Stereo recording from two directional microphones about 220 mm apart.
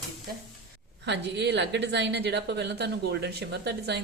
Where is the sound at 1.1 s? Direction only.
50° right (ahead or behind).